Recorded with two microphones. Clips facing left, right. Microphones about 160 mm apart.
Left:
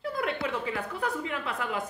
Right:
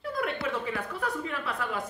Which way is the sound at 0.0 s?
30° left (ahead or behind).